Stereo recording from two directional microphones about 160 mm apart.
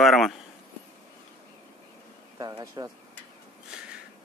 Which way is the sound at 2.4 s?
25° right (ahead or behind).